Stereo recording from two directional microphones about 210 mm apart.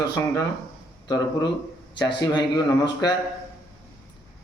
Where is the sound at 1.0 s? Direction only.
20° left (ahead or behind).